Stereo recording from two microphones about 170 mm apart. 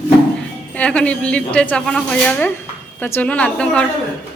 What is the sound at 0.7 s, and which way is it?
A woman's voice, 5° left (ahead or behind).